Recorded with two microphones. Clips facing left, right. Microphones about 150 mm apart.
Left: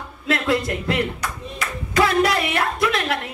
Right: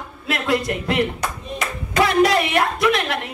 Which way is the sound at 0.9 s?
25° right (ahead or behind).